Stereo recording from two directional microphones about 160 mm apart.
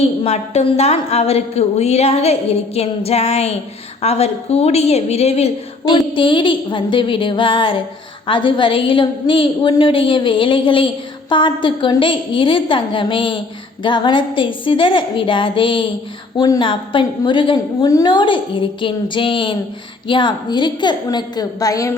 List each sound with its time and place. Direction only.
0.0 s a woman's voice: 40° left (ahead or behind); by 21.9 s 20° left (ahead or behind)